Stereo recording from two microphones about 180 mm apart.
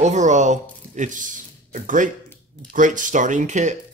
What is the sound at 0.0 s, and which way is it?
Speech, 40° right (ahead or behind).